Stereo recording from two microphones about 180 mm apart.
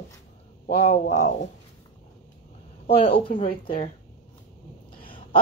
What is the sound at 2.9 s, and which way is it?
Speech, 30° left (ahead or behind).